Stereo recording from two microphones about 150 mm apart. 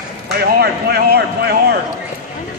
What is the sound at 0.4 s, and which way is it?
Speech, 90° right.